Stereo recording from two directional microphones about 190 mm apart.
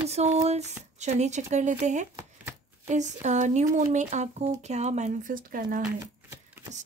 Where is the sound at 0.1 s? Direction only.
35° right (ahead or behind).